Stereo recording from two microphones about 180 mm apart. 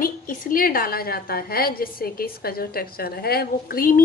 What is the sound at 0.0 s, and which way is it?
A woman's voice, 50° left (ahead or behind).